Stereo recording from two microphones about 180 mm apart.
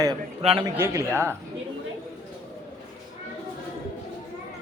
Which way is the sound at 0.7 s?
15° right (ahead or behind).